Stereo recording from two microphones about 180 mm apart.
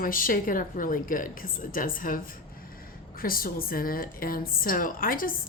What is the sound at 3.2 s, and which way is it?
Speech, 55° left (ahead or behind).